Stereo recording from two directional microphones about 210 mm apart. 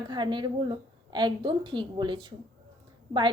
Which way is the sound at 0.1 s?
20° right (ahead or behind).